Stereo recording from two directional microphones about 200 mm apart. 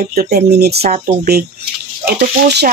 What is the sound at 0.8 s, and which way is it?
Speech, 35° right (ahead or behind).